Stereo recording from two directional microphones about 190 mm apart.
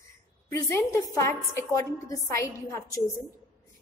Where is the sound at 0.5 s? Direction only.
15° left (ahead or behind).